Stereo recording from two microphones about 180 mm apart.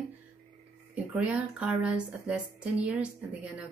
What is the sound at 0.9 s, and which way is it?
A woman's voice, 5° right (ahead or behind).